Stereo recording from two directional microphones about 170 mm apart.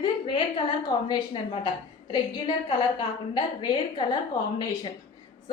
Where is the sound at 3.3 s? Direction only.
25° left (ahead or behind).